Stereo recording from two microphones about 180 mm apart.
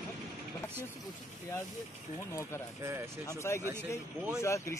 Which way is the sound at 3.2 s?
15° left (ahead or behind).